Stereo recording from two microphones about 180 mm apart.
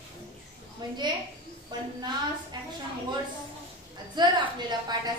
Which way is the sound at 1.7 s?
25° right (ahead or behind).